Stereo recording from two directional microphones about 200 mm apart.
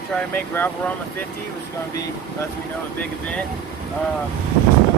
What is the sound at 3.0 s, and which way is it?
Speech, 5° left (ahead or behind).